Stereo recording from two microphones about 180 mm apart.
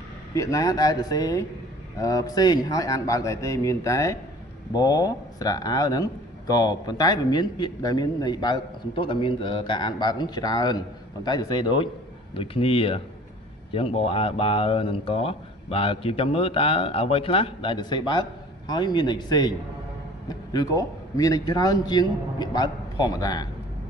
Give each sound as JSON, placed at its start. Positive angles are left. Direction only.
{"t": 0.3, "sound": "speech", "side_deg": 20}